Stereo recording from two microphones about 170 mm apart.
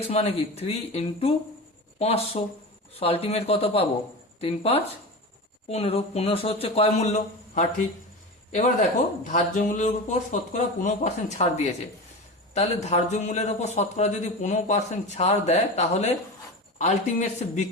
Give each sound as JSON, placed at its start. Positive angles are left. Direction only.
{"t": 0.1, "sound": "a man's voice", "side_deg": 35}